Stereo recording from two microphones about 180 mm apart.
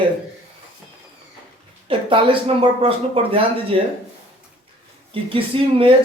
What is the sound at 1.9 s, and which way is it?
A man's voice, 30° right (ahead or behind).